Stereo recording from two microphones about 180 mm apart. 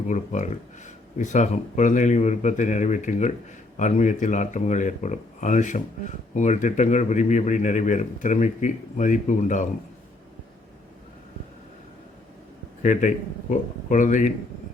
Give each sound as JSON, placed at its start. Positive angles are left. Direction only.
{"t": 0.1, "sound": "speech", "side_deg": 40}
{"t": 12.8, "sound": "speech", "side_deg": 45}